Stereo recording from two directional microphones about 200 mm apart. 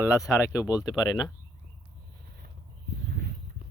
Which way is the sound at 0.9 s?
20° left (ahead or behind).